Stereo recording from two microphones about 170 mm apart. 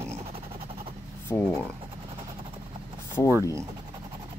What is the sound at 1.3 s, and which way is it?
Speech, centre (ahead or behind).